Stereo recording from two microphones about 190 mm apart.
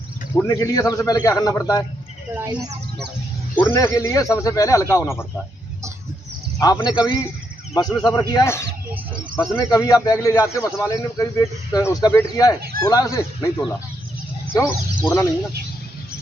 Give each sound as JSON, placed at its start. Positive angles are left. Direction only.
{"t": 0.4, "sound": "speech", "side_deg": 15}
{"t": 2.3, "sound": "speech", "side_deg": -15}
{"t": 3.5, "sound": "speech", "side_deg": 10}
{"t": 6.6, "sound": "a man's voice", "side_deg": 20}
{"t": 9.7, "sound": "speech", "side_deg": 20}